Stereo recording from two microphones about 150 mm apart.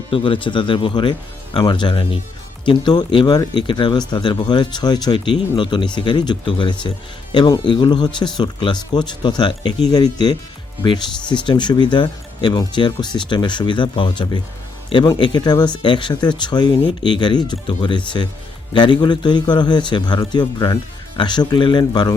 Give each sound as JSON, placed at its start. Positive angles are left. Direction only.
{"t": 0.1, "sound": "speech", "side_deg": 35}